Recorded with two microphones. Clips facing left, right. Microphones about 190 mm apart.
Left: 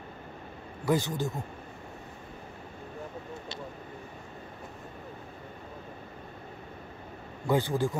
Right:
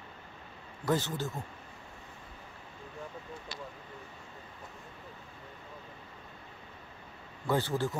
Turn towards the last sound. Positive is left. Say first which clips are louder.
# left 3 dB
turn(degrees=15)  # may be behind; listen again after turning